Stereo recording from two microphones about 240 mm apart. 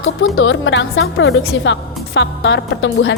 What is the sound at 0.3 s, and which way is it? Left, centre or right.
Speech, left.